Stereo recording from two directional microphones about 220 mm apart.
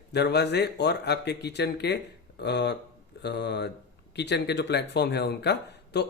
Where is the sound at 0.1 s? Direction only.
50° left (ahead or behind).